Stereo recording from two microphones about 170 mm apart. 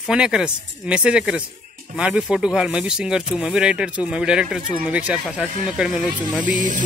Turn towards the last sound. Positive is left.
turn(degrees=-50)  # may be behind; listen again after turning